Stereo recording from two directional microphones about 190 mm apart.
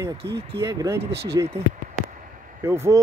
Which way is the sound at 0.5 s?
15° right (ahead or behind).